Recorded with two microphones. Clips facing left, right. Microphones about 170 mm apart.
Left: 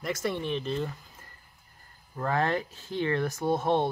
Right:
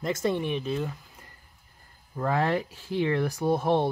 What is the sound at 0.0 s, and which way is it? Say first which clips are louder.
Speech: right 4 dB; 25° right (ahead or behind).